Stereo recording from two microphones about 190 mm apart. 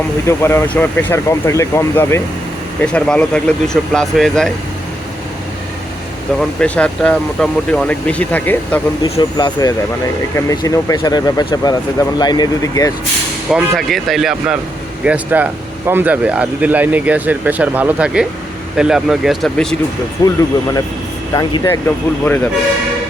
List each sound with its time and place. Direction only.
0.3 s speech: 15° left (ahead or behind)
6.6 s speech: 5° left (ahead or behind)
9.0 s speech: 30° left (ahead or behind)
10.3 s speech: 15° left (ahead or behind)
13.5 s speech: centre (ahead or behind)
20.2 s speech: 20° left (ahead or behind)